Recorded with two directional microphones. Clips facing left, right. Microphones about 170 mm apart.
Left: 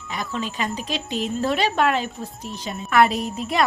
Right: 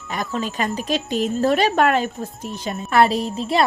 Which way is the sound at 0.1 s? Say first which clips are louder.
Right 3 dB; 45° right (ahead or behind).